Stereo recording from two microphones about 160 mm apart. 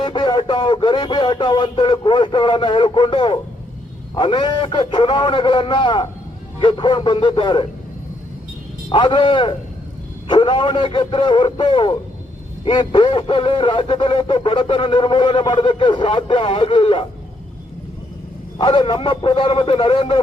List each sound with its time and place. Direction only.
0.0 s speech: 30° left (ahead or behind)
8.9 s speech: 30° left (ahead or behind)
18.6 s speech: 30° left (ahead or behind)